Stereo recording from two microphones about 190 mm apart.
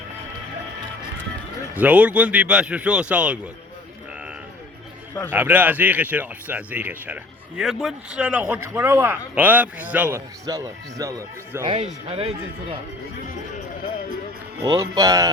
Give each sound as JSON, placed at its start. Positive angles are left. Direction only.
{"t": 1.7, "sound": "speech", "side_deg": -10}
{"t": 5.3, "sound": "speech", "side_deg": -10}
{"t": 11.7, "sound": "speech", "side_deg": -35}
{"t": 14.6, "sound": "speech", "side_deg": -20}